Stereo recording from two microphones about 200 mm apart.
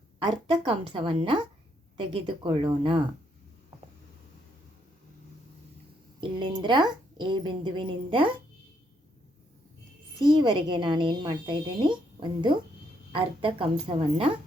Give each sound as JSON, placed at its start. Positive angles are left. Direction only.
{"t": 0.2, "sound": "a woman's voice", "side_deg": -25}
{"t": 6.1, "sound": "a woman's voice", "side_deg": -25}
{"t": 10.2, "sound": "a woman's voice", "side_deg": -20}